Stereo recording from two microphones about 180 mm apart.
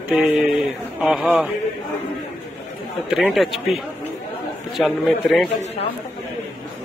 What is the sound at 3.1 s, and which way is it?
A man's voice, centre (ahead or behind).